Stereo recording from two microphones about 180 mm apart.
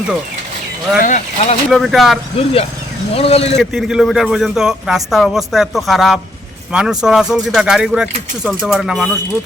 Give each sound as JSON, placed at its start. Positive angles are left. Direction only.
{"t": 0.9, "sound": "speech", "side_deg": 45}
{"t": 1.7, "sound": "a man's voice", "side_deg": 0}
{"t": 2.4, "sound": "speech", "side_deg": 35}
{"t": 3.6, "sound": "a man's voice", "side_deg": 0}